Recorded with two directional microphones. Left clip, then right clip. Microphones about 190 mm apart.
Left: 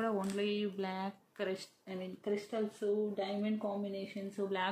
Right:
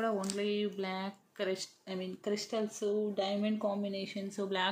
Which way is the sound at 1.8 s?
25° right (ahead or behind).